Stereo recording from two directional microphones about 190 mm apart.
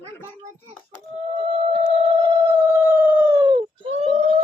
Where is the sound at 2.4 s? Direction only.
10° right (ahead or behind).